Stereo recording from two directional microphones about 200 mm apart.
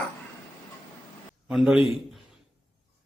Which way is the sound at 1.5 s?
5° right (ahead or behind).